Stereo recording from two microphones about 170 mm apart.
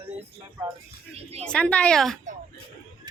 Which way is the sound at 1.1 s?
35° right (ahead or behind).